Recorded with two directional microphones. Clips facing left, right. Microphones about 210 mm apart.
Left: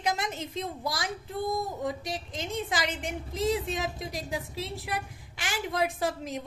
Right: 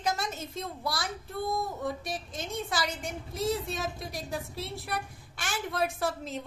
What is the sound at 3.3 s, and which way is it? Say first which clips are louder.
A woman's voice: left 2 dB; 15° left (ahead or behind).